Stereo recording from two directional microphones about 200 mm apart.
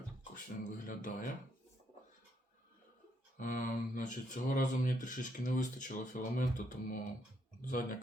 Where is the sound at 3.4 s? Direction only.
40° left (ahead or behind).